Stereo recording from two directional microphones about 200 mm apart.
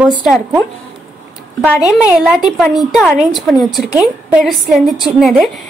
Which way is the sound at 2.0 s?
5° right (ahead or behind).